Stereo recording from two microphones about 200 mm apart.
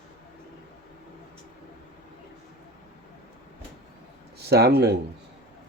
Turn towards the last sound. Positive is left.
turn(degrees=-55)  # may be behind; listen again after turning